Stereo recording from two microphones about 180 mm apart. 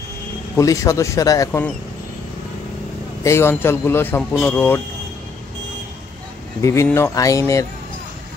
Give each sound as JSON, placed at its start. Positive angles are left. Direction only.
{"t": 0.6, "sound": "speech", "side_deg": 20}
{"t": 3.3, "sound": "speech", "side_deg": 15}
{"t": 6.6, "sound": "speech", "side_deg": 15}